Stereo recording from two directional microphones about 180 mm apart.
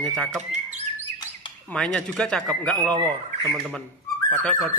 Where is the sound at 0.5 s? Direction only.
40° right (ahead or behind).